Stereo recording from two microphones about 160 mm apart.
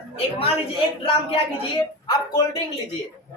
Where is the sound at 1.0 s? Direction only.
30° left (ahead or behind).